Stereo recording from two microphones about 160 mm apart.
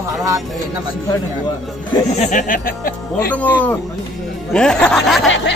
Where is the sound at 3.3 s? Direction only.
10° left (ahead or behind).